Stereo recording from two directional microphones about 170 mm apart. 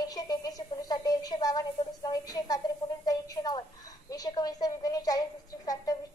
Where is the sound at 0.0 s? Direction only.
20° left (ahead or behind).